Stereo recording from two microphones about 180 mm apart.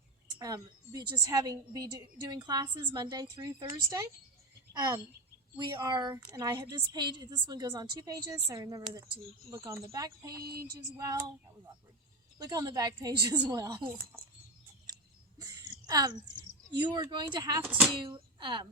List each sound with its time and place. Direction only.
0.3 s a woman's voice: 20° right (ahead or behind)
12.4 s a woman's voice: 20° right (ahead or behind)
15.4 s speech: 20° right (ahead or behind)
17.7 s speech: 5° right (ahead or behind)
18.0 s speech: 25° right (ahead or behind)